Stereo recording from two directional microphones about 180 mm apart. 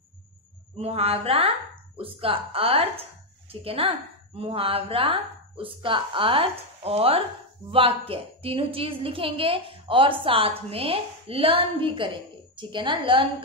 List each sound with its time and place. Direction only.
0.7 s a woman's voice: 35° right (ahead or behind)